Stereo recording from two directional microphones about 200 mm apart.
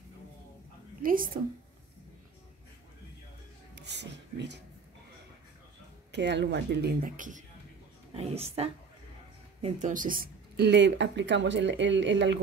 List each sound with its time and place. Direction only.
1.0 s speech: 45° right (ahead or behind)
3.8 s a sound: 60° right (ahead or behind)
6.1 s speech: 60° right (ahead or behind); by 7.4 s 40° right (ahead or behind)
8.1 s speech: 30° right (ahead or behind); by 12.4 s 65° right (ahead or behind)